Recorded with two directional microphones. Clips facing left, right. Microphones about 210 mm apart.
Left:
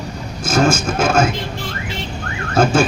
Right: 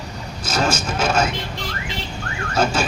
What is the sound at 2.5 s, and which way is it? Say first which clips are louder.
Speech: left 6 dB; 50° left (ahead or behind).